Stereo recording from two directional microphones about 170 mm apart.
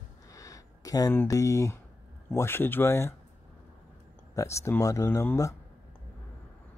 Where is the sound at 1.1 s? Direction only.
20° left (ahead or behind).